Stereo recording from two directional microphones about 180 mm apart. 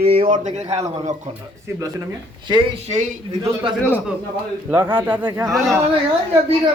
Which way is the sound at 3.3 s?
15° right (ahead or behind).